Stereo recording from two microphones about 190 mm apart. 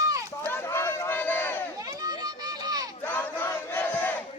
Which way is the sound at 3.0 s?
10° left (ahead or behind).